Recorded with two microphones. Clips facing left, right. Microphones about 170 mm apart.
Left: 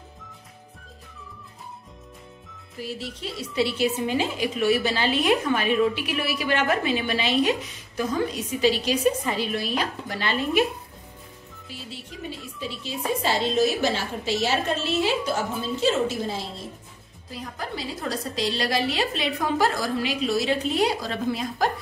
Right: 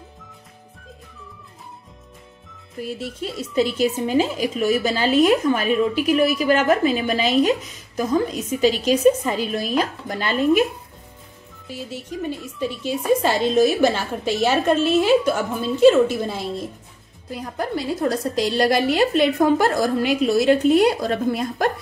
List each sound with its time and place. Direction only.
3.3 s a woman's voice: centre (ahead or behind)
3.5 s a woman's voice: 45° right (ahead or behind)
11.9 s a woman's voice: 50° right (ahead or behind)